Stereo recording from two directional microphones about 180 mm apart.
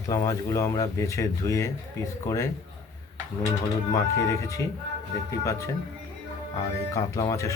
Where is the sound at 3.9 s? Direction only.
15° left (ahead or behind).